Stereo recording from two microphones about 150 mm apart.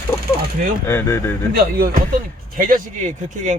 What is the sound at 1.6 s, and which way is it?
Speech, 85° right.